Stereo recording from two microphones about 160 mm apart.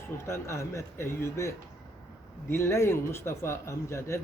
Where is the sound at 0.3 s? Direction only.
15° left (ahead or behind).